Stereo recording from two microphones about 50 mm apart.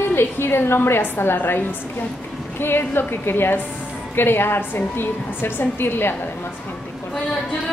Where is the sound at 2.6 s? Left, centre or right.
Left.